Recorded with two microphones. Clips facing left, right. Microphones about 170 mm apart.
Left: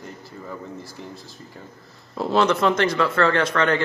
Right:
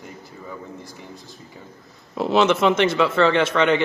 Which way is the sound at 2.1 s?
25° right (ahead or behind).